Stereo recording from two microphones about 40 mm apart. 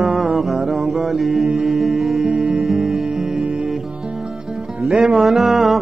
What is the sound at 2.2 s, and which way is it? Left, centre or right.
Music, right.